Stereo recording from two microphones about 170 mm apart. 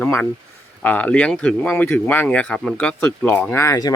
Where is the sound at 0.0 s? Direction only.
5° left (ahead or behind).